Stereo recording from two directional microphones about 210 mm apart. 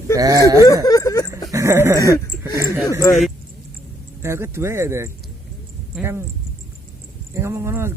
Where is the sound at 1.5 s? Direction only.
10° right (ahead or behind).